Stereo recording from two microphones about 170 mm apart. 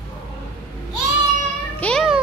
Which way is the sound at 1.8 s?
10° left (ahead or behind).